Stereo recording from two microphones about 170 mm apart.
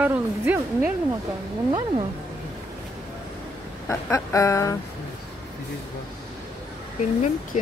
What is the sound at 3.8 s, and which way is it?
Speech, 20° left (ahead or behind).